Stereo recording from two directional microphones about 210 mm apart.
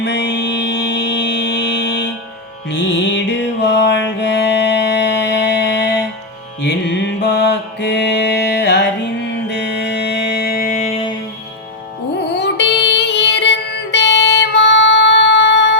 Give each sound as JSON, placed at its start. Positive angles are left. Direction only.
{"t": 0.0, "sound": "music", "side_deg": 55}
{"t": 12.4, "sound": "music", "side_deg": 55}